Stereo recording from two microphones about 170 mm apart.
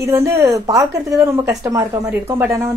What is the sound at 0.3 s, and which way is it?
A woman's voice, 20° right (ahead or behind).